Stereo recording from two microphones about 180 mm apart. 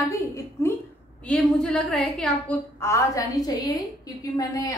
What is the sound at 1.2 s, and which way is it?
A woman's voice, centre (ahead or behind).